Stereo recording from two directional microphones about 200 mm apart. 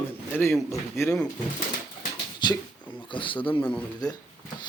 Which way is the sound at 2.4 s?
20° left (ahead or behind).